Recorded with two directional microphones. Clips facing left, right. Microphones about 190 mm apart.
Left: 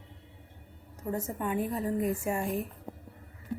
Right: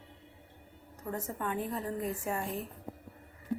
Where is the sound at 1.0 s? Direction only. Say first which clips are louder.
Left 4 dB; 10° left (ahead or behind).